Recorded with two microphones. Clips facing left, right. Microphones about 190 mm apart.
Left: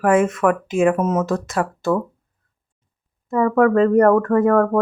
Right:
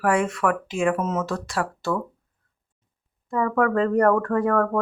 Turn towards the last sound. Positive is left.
turn(degrees=20)  # may be behind; listen again after turning